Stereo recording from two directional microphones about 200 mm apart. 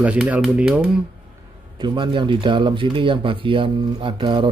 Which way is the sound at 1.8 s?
25° right (ahead or behind).